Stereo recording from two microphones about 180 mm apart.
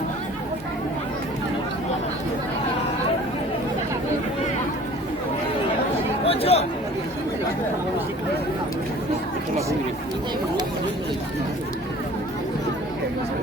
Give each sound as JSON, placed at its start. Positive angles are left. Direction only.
{"t": 6.2, "sound": "chatter", "side_deg": 35}